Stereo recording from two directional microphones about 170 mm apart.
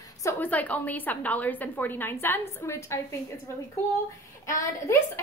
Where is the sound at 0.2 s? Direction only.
15° left (ahead or behind).